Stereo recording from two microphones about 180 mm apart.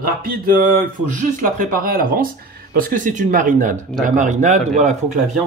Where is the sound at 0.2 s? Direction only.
50° right (ahead or behind).